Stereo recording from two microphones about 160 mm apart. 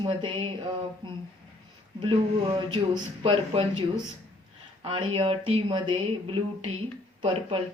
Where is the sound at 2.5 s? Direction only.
30° right (ahead or behind).